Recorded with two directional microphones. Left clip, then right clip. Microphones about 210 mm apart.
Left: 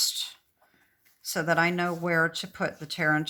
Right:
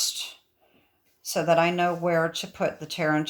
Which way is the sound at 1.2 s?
20° left (ahead or behind).